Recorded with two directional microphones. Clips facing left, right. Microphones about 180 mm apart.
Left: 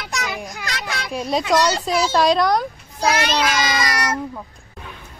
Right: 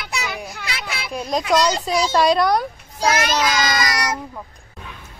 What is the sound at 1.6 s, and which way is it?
Speech, 10° right (ahead or behind).